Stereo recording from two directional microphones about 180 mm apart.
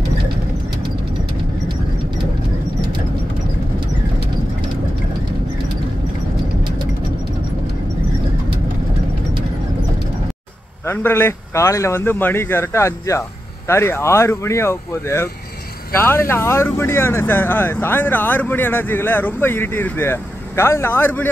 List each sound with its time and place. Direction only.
10.9 s speech: 10° left (ahead or behind)